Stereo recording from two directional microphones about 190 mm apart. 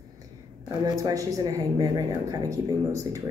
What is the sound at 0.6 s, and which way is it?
Speech, 15° right (ahead or behind).